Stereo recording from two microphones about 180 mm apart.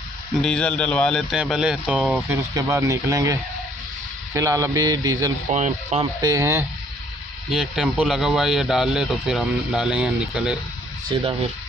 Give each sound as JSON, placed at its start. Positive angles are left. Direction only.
{"t": 0.4, "sound": "speech", "side_deg": 5}
{"t": 2.2, "sound": "speech", "side_deg": -15}
{"t": 5.5, "sound": "speech", "side_deg": -40}
{"t": 6.2, "sound": "speech", "side_deg": -15}
{"t": 7.4, "sound": "speech", "side_deg": -5}